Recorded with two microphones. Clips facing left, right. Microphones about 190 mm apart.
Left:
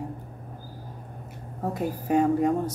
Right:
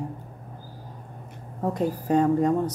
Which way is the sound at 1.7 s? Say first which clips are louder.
Right 1 dB; 10° left (ahead or behind).